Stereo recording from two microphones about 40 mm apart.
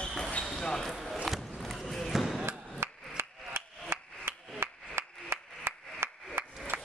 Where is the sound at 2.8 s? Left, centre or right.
Right.